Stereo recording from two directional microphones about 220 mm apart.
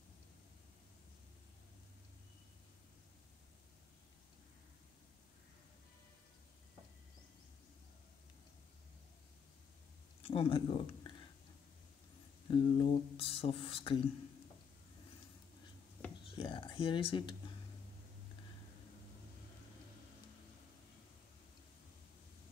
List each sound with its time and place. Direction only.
10.2 s speech: 25° left (ahead or behind)
12.4 s speech: 20° left (ahead or behind)
16.3 s speech: 25° left (ahead or behind)